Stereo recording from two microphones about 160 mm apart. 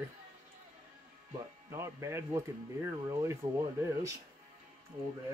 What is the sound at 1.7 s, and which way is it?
Speech, 15° right (ahead or behind).